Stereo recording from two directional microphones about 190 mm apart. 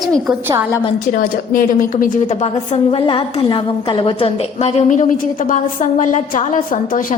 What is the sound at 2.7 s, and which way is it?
A woman's voice, 30° left (ahead or behind).